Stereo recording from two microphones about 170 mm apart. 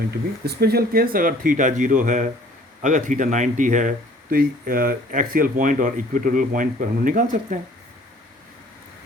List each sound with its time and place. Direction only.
0.4 s speech: 65° right (ahead or behind)